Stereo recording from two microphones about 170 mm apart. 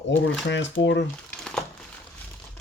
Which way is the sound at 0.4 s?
90° left.